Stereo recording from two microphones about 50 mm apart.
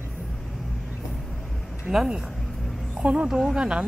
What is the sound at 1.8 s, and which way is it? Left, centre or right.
Speech, centre.